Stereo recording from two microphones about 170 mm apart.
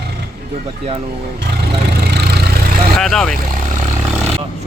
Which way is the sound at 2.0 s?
75° right (ahead or behind).